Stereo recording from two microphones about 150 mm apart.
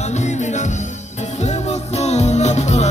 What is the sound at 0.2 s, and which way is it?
Music, 50° left (ahead or behind).